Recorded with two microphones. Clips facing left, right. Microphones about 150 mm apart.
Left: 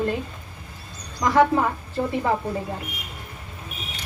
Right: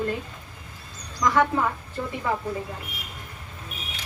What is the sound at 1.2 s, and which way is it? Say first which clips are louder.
Speech: left 3 dB; 35° left (ahead or behind).